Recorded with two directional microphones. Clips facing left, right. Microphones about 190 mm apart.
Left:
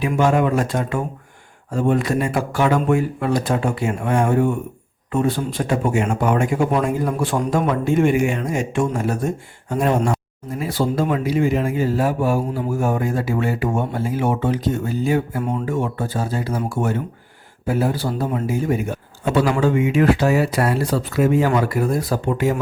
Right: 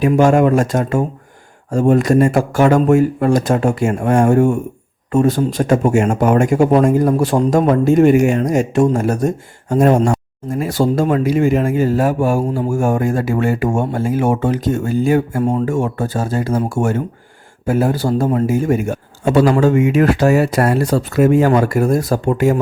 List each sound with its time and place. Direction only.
0.0 s speech: 45° right (ahead or behind)